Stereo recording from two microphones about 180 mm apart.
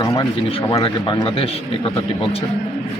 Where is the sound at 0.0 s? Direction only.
25° left (ahead or behind).